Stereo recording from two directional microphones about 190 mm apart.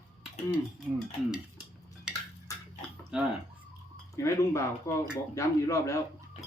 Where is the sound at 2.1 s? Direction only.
5° right (ahead or behind).